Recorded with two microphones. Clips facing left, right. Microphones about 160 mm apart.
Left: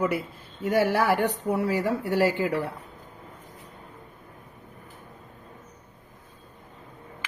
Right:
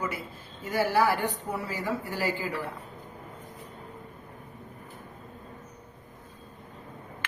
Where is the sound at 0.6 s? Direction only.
65° left (ahead or behind).